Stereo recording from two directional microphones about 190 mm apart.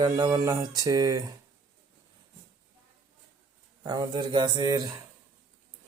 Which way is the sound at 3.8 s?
20° right (ahead or behind).